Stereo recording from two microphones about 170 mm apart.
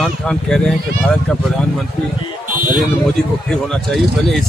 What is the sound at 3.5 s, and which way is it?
Speech, 5° left (ahead or behind).